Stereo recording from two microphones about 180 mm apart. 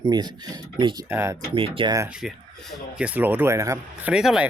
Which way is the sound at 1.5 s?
30° right (ahead or behind).